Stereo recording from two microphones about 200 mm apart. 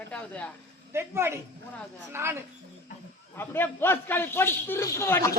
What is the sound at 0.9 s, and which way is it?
Speech, 10° right (ahead or behind).